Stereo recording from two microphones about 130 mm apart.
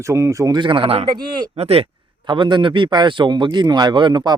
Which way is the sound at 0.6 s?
40° right (ahead or behind).